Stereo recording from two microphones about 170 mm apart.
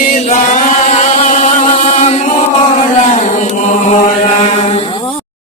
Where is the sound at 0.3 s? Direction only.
40° left (ahead or behind).